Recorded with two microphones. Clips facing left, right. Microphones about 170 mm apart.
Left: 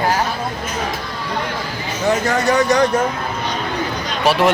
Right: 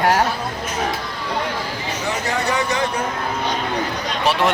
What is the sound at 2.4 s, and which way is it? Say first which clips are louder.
Speech: left 8 dB; 45° left (ahead or behind).